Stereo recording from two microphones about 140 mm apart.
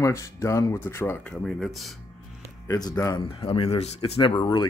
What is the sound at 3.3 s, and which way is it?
Speech, 40° left (ahead or behind).